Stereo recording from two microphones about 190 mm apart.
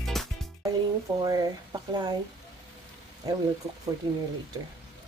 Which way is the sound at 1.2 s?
20° right (ahead or behind).